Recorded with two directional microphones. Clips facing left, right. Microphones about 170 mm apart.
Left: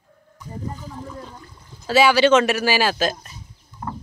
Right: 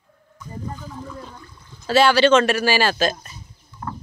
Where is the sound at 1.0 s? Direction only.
15° left (ahead or behind).